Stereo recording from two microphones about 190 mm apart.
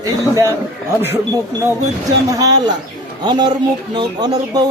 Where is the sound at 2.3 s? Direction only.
20° right (ahead or behind).